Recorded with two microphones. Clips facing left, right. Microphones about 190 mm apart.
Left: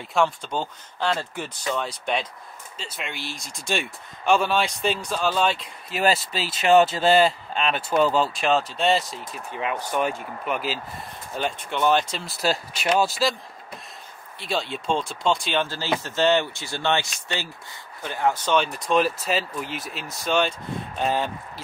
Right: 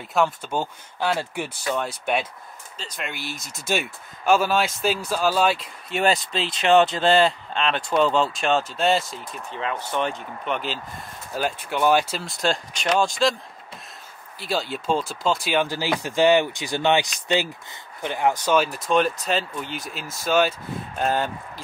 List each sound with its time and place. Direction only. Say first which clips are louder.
0.0 s speech: even; centre (ahead or behind)
9.5 s speech: left 1 dB; 15° left (ahead or behind)
14.4 s speech: right 1 dB; centre (ahead or behind)